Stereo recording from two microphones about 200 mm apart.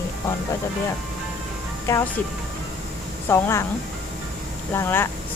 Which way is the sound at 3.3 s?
15° left (ahead or behind).